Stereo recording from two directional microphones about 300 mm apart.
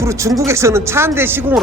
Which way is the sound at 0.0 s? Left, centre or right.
Centre.